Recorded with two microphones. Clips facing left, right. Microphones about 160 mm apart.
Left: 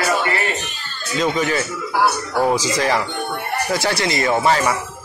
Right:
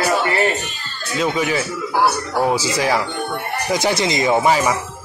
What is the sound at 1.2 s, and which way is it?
Speech, 10° right (ahead or behind).